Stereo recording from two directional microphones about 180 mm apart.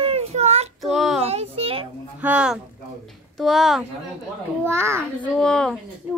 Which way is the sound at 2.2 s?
5° right (ahead or behind).